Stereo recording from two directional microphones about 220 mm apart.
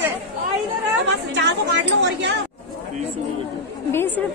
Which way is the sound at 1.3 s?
55° right (ahead or behind).